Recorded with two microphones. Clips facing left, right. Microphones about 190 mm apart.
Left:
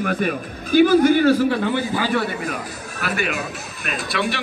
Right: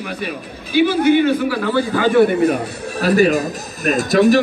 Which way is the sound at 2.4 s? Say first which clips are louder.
Right 11 dB; 30° right (ahead or behind).